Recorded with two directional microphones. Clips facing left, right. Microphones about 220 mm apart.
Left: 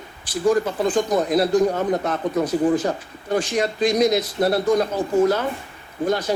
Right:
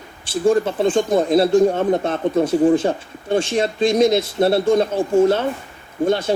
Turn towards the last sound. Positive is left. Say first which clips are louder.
# right 4 dB
turn(degrees=-25)  # may be behind; listen again after turning